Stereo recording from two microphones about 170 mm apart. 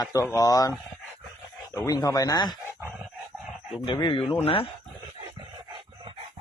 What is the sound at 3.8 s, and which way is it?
Speech, 25° left (ahead or behind).